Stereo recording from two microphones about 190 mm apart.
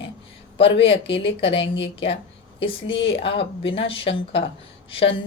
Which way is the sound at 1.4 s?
30° left (ahead or behind).